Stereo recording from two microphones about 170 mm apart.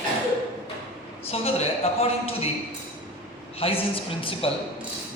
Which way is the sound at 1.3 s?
35° left (ahead or behind).